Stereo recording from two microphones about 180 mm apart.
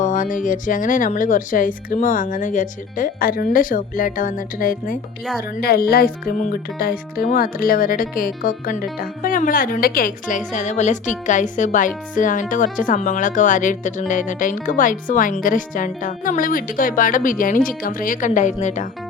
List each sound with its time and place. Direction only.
0.0 s speech: 45° left (ahead or behind)